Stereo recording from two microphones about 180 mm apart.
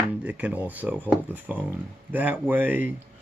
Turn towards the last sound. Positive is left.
turn(degrees=-10)  # may be behind; listen again after turning